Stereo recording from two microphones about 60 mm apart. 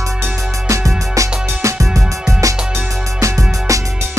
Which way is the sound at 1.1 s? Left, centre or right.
Right.